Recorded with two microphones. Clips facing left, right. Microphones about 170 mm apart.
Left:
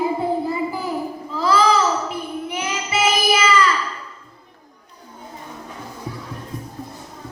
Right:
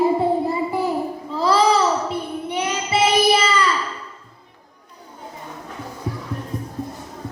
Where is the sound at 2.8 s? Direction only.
30° right (ahead or behind).